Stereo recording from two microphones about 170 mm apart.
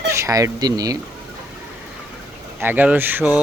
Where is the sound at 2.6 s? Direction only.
10° right (ahead or behind).